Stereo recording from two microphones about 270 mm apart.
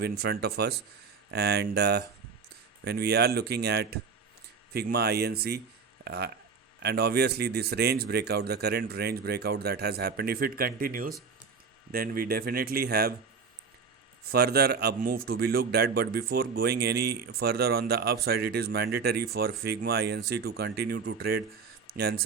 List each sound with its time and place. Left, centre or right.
0.0 s speech: right
14.3 s speech: right